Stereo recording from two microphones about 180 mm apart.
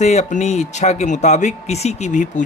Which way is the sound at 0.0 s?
40° left (ahead or behind).